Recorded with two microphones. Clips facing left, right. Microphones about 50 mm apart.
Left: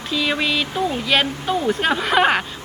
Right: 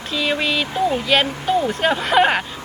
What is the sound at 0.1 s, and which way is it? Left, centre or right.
Speech, centre.